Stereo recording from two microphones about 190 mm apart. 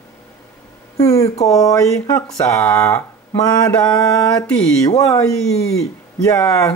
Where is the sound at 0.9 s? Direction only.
15° left (ahead or behind).